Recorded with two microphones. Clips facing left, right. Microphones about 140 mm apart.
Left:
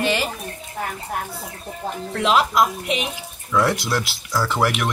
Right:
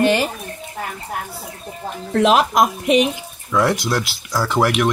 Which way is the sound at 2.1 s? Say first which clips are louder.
Right 4 dB; 50° right (ahead or behind).